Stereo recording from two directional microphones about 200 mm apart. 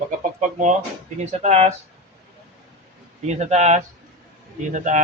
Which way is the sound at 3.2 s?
35° right (ahead or behind).